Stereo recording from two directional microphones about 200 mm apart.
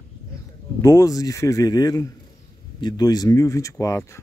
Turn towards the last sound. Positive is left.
turn(degrees=15)  # may be behind; listen again after turning